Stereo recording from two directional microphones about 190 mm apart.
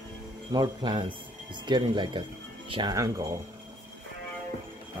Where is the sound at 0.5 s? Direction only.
25° right (ahead or behind).